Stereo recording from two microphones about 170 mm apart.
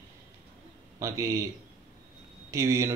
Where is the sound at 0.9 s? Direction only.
20° right (ahead or behind).